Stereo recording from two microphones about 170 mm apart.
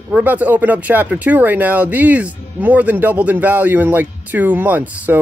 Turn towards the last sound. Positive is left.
turn(degrees=-10)  # may be behind; listen again after turning